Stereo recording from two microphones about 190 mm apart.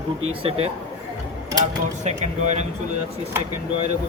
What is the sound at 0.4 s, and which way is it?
Speech, 30° right (ahead or behind).